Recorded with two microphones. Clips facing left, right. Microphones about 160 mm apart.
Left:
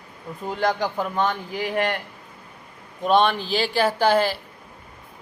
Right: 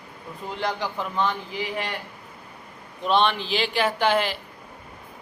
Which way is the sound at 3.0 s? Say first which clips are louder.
Left 3 dB; 45° left (ahead or behind).